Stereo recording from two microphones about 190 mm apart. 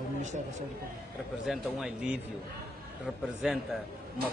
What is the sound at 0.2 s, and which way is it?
Speech, 40° right (ahead or behind).